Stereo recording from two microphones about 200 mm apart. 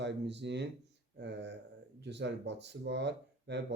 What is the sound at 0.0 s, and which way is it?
Speech, 60° right (ahead or behind).